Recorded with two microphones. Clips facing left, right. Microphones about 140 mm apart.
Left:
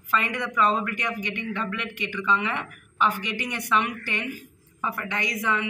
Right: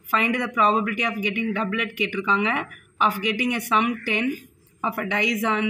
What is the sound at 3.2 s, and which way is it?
Speech, 15° right (ahead or behind).